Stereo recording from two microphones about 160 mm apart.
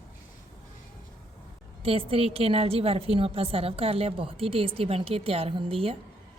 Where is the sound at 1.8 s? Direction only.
35° right (ahead or behind).